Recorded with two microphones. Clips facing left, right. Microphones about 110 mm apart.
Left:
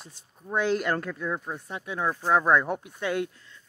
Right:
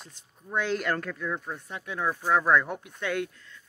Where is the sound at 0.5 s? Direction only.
30° left (ahead or behind).